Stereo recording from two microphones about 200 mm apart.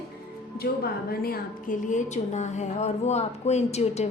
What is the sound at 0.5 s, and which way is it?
A woman's voice, 50° left (ahead or behind).